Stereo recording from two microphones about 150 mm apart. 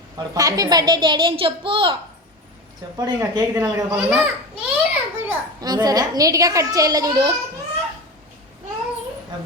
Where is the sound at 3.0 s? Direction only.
20° right (ahead or behind).